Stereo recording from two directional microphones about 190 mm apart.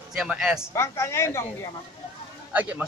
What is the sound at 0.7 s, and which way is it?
Speech, 15° left (ahead or behind).